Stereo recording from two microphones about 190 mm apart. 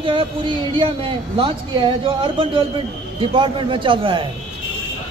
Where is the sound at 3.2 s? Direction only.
25° right (ahead or behind).